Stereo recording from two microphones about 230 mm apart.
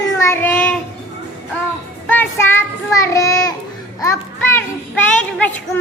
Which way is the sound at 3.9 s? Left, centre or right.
Centre.